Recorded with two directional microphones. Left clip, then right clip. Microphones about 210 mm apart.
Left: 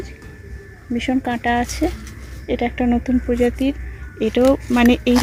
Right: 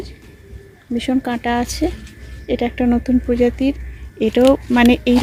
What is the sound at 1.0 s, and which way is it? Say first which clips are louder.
Speech: even; 15° right (ahead or behind).